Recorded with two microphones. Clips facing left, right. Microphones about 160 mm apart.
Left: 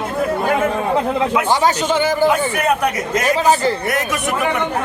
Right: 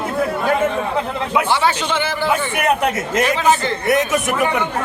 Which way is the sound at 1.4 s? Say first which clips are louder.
Left 2 dB; 40° left (ahead or behind).